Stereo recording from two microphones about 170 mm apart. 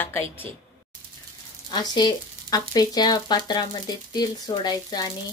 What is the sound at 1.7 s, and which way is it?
Speech, 25° left (ahead or behind).